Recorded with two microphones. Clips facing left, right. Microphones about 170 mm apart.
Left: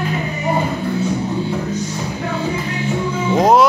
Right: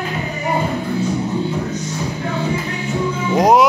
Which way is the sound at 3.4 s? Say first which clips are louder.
Even; 15° right (ahead or behind).